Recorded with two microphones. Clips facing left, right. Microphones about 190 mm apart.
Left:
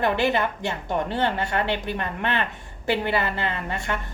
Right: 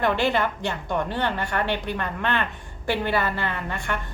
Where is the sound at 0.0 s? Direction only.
20° left (ahead or behind).